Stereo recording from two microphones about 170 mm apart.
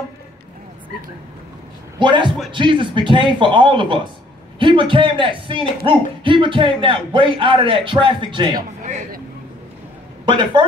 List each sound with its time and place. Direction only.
2.0 s speech: 30° right (ahead or behind)
8.8 s speech: 45° right (ahead or behind)
10.2 s speech: 30° right (ahead or behind)